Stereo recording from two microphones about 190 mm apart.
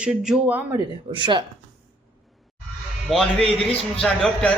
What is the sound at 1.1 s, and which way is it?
Speech, 25° right (ahead or behind).